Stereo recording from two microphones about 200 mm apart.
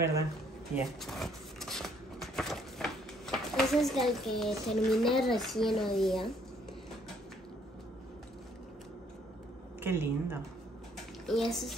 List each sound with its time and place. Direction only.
1.0 s a sound: centre (ahead or behind)
9.8 s a woman's voice: 10° right (ahead or behind)
11.2 s a woman's voice: centre (ahead or behind)